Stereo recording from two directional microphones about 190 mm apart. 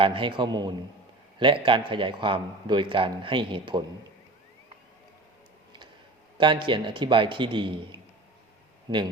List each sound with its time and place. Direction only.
0.0 s speech: 25° right (ahead or behind)
6.3 s speech: 25° right (ahead or behind)
8.9 s speech: 20° right (ahead or behind)